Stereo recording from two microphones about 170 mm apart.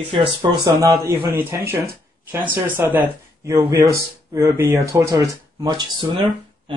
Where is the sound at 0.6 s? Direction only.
15° right (ahead or behind).